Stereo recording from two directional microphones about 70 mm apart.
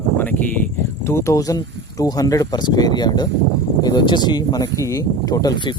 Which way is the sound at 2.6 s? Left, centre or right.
Left.